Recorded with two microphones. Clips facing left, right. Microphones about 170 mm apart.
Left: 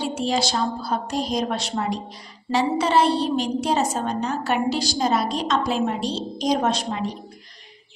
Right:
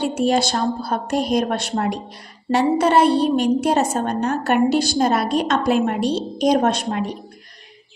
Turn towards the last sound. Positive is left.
turn(degrees=-60)  # may be behind; listen again after turning